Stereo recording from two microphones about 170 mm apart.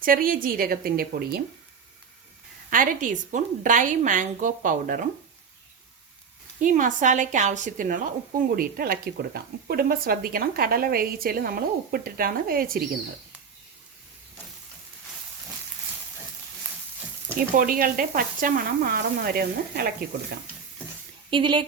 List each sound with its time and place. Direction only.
0.0 s speech: 55° right (ahead or behind)
2.6 s a woman's voice: 55° right (ahead or behind)
6.6 s a woman's voice: 50° right (ahead or behind)
8.4 s speech: 60° right (ahead or behind)
17.3 s speech: 55° right (ahead or behind)
21.2 s speech: 30° right (ahead or behind)